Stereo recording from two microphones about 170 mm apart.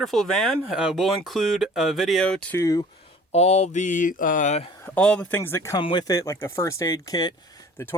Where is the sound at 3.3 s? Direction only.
40° left (ahead or behind).